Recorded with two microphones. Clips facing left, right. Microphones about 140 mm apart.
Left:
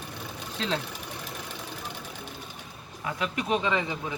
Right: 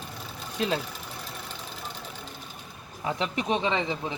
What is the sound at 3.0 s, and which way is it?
Speech, 25° right (ahead or behind).